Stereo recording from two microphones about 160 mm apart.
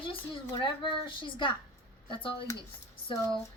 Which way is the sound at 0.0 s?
30° left (ahead or behind).